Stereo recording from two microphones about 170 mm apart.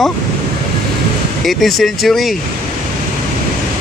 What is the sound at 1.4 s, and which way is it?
Speech, centre (ahead or behind).